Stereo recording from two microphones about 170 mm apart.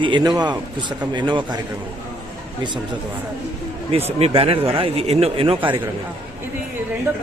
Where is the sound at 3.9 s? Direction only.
35° right (ahead or behind).